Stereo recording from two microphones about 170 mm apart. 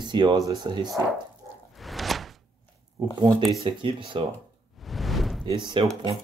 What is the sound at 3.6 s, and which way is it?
Speech, 30° right (ahead or behind).